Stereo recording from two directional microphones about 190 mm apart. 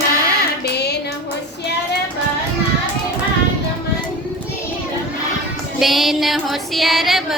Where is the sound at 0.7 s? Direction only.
60° left (ahead or behind).